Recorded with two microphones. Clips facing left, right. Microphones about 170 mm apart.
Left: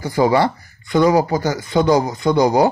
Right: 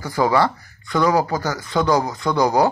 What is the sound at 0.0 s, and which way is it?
Speech, 20° left (ahead or behind).